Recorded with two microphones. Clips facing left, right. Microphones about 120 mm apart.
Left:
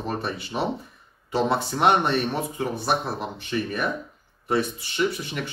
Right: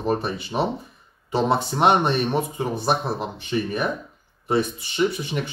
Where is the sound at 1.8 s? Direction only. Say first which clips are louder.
Right 1 dB; 20° right (ahead or behind).